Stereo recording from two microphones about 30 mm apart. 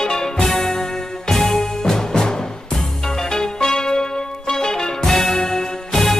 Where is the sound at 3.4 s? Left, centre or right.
Left.